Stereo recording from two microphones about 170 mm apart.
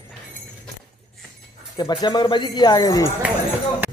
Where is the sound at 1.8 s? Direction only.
25° left (ahead or behind).